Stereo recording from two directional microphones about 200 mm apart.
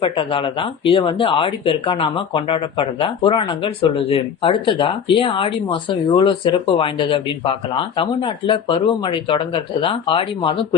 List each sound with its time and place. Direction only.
0.0 s speech: 25° left (ahead or behind)